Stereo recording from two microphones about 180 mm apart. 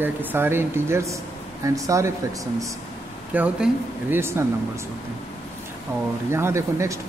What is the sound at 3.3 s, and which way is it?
A man's voice, 10° right (ahead or behind).